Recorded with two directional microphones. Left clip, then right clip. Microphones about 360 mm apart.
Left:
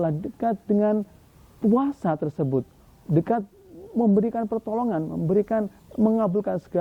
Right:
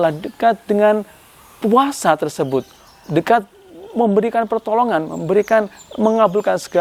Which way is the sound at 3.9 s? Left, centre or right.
Right.